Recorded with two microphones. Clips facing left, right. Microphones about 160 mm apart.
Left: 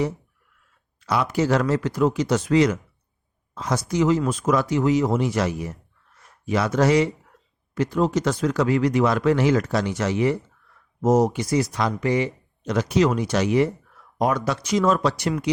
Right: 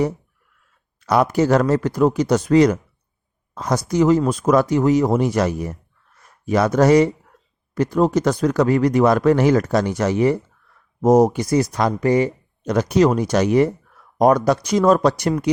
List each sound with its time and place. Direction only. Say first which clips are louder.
0.9 s speech: right 6 dB; 45° right (ahead or behind)